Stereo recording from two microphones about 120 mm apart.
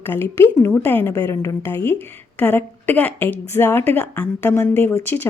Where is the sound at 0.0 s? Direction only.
20° left (ahead or behind).